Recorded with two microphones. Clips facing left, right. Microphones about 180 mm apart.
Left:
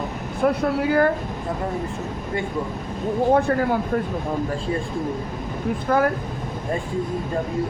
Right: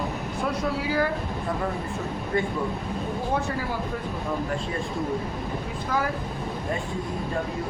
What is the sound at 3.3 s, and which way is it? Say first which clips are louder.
Speech: left 8 dB; 55° left (ahead or behind).